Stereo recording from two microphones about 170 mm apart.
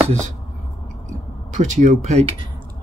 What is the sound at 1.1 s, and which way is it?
Speech, 45° right (ahead or behind).